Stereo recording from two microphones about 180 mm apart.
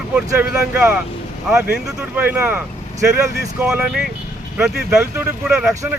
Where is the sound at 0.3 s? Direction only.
10° right (ahead or behind).